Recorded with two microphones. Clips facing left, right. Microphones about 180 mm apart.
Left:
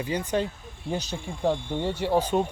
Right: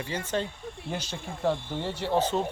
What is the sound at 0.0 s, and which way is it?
Speech, 15° left (ahead or behind).